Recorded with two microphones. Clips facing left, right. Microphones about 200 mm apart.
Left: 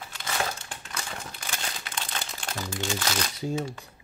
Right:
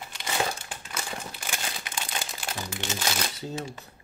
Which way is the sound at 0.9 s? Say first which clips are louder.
Right 2 dB; 5° right (ahead or behind).